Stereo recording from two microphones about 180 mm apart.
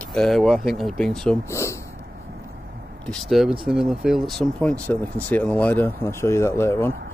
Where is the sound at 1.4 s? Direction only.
15° left (ahead or behind).